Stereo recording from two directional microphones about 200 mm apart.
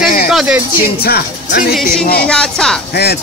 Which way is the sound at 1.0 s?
50° left (ahead or behind).